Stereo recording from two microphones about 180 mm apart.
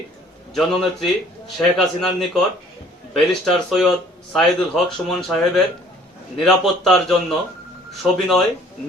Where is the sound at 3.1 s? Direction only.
Centre (ahead or behind).